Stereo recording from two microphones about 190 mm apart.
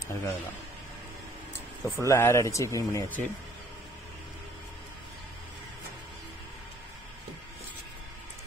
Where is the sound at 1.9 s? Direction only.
15° left (ahead or behind).